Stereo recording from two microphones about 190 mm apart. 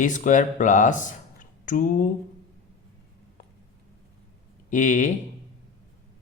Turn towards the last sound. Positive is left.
turn(degrees=40)  # may be behind; listen again after turning